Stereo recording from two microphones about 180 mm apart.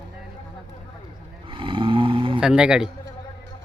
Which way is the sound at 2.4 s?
5° right (ahead or behind).